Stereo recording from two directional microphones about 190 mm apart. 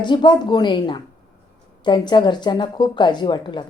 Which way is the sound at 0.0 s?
25° left (ahead or behind).